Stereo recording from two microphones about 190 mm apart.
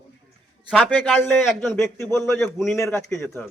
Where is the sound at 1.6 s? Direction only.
10° left (ahead or behind).